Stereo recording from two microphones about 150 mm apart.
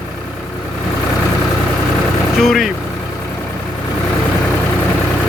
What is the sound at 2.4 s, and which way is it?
Speech, centre (ahead or behind).